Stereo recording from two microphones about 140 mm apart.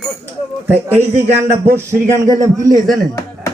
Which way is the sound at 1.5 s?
20° right (ahead or behind).